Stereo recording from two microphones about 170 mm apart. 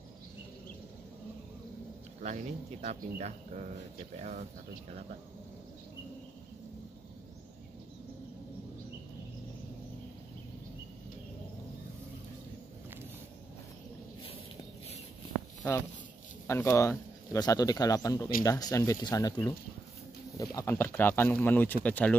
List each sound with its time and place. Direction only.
2.2 s speech: 45° right (ahead or behind)
16.4 s speech: 15° left (ahead or behind)